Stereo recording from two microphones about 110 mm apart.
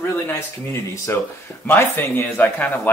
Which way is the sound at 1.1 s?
20° left (ahead or behind).